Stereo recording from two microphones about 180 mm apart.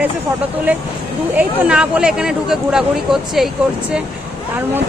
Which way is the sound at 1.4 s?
5° right (ahead or behind).